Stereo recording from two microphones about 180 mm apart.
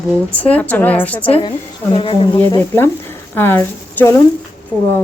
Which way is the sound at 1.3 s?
30° left (ahead or behind).